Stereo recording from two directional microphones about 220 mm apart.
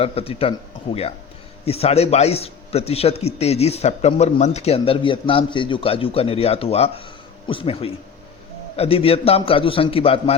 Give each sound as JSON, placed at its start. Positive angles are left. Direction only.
{"t": 0.0, "sound": "a man's voice", "side_deg": 25}
{"t": 1.6, "sound": "a man's voice", "side_deg": 25}